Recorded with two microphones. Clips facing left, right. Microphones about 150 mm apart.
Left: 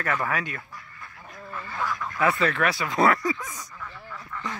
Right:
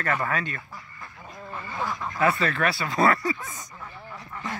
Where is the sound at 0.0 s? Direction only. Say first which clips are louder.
Even; 10° left (ahead or behind).